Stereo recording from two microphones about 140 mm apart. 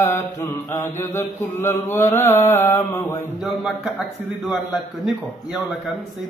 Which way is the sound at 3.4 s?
5° right (ahead or behind).